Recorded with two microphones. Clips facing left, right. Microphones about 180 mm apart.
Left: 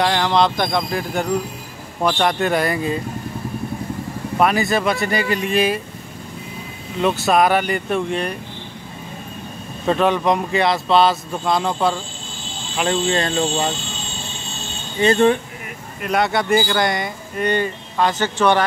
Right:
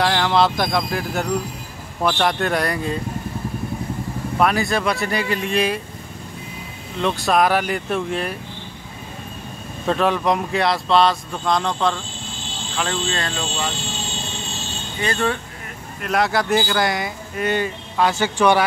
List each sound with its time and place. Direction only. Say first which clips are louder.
0.0 s speech: left 1 dB; centre (ahead or behind)
4.4 s speech: left 2 dB; centre (ahead or behind)
7.0 s speech: left 2 dB; 5° left (ahead or behind)
9.8 s speech: left 2 dB; centre (ahead or behind)
12.7 s speech: left 5 dB; 20° left (ahead or behind)
15.0 s speech: left 8 dB; 25° left (ahead or behind)
16.0 s speech: left 1 dB; centre (ahead or behind)